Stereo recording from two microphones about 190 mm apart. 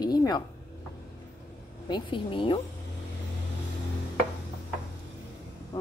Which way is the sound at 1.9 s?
25° left (ahead or behind).